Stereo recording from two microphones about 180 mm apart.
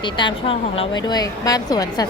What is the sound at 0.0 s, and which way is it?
Speech, 25° left (ahead or behind).